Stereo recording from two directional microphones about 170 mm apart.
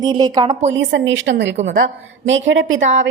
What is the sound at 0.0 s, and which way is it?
Speech, 25° right (ahead or behind).